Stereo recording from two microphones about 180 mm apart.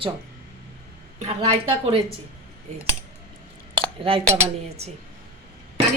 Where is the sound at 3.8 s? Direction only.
30° right (ahead or behind).